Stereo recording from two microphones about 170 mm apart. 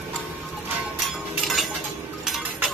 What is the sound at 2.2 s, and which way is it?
Cutlery, centre (ahead or behind).